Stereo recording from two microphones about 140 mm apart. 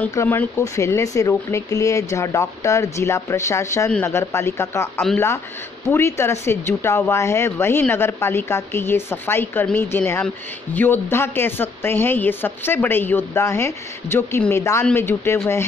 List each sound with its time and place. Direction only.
0.1 s speech: 20° left (ahead or behind)